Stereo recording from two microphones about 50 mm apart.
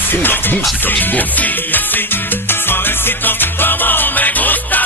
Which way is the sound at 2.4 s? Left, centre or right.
Left.